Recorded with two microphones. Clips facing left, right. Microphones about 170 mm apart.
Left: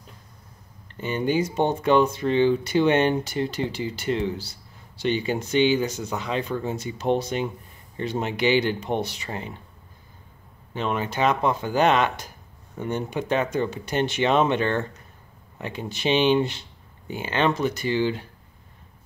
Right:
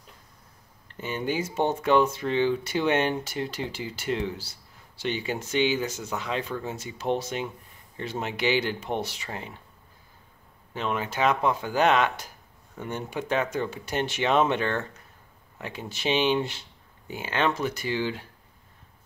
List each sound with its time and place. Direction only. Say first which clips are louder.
0.9 s speech: left 5 dB; 5° right (ahead or behind)
10.7 s speech: left 3 dB; 5° right (ahead or behind)